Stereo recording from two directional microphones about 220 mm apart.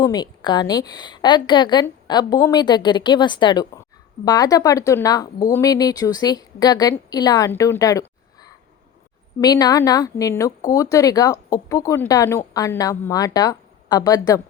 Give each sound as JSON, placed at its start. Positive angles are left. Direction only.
{"t": 0.0, "sound": "a woman's voice", "side_deg": 20}